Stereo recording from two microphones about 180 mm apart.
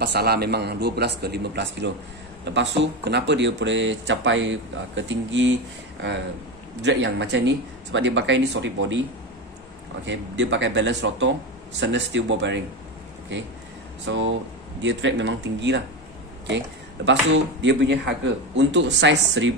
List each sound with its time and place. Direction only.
0.0 s a man's voice: 65° right (ahead or behind)
2.4 s speech: 80° right
6.8 s speech: 80° right
10.0 s speech: 90° right
18.6 s speech: 75° right (ahead or behind)